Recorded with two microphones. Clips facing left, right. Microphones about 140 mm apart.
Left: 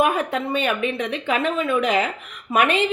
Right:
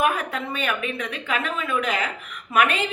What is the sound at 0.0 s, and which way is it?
A woman's voice, 35° left (ahead or behind).